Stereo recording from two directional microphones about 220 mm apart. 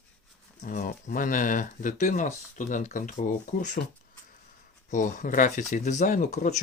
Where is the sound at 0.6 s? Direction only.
40° left (ahead or behind).